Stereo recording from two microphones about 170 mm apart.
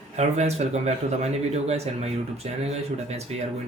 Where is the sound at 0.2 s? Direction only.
40° right (ahead or behind).